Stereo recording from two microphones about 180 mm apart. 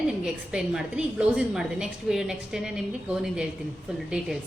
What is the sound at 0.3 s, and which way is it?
A woman's voice, 5° right (ahead or behind).